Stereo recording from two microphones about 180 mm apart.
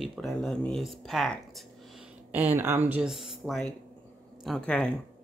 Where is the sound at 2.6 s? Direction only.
10° right (ahead or behind); by 4.9 s 5° left (ahead or behind).